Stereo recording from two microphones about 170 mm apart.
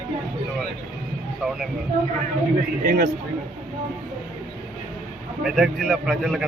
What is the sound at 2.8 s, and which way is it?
Speech, 55° right (ahead or behind).